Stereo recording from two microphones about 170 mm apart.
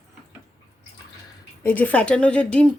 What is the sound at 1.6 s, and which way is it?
Speech, 10° left (ahead or behind).